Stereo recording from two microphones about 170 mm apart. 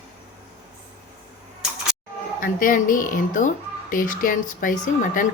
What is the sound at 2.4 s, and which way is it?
Speech, 55° left (ahead or behind).